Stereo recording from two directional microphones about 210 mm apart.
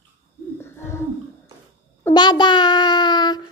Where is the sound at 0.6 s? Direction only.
10° left (ahead or behind).